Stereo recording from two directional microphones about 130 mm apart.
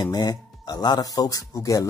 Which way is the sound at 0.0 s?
30° left (ahead or behind).